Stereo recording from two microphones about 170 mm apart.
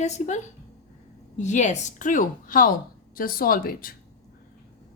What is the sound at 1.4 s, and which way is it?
A woman's voice, 45° left (ahead or behind).